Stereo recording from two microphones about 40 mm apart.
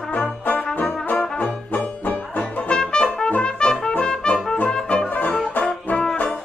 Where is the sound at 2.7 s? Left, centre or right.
Left.